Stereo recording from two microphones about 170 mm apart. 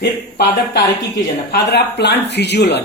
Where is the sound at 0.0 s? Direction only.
75° left (ahead or behind).